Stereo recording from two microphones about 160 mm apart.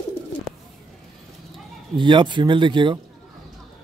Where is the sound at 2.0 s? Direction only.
30° right (ahead or behind).